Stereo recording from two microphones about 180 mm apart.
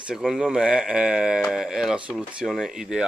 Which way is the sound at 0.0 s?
5° right (ahead or behind).